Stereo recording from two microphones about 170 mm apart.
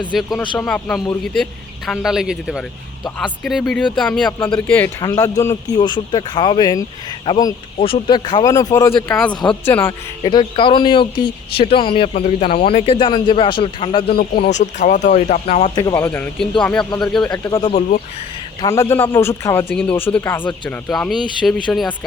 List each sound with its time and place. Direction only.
0.2 s a man's voice: 5° left (ahead or behind)
4.7 s speech: 15° left (ahead or behind)
9.6 s a man's voice: 15° left (ahead or behind)
10.2 s speech: 25° left (ahead or behind)
14.2 s speech: 65° left (ahead or behind)
14.5 s speech: 45° left (ahead or behind)
15.8 s a man's voice: 10° left (ahead or behind)
17.5 s a man's voice: 25° left (ahead or behind); by 21.9 s 5° left (ahead or behind)